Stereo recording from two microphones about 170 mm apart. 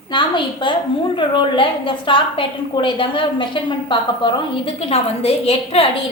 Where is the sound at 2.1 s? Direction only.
30° left (ahead or behind).